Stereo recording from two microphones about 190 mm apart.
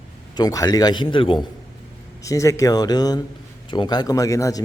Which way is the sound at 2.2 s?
15° left (ahead or behind).